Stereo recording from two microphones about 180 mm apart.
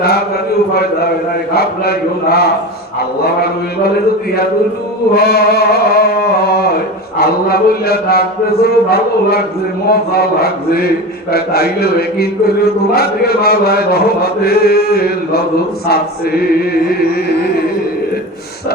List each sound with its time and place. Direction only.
1.5 s chant: 60° left (ahead or behind)
5.1 s chant: 60° left (ahead or behind)